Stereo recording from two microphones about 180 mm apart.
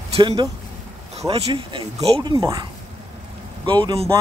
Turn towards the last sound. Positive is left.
turn(degrees=-25)  # may be behind; listen again after turning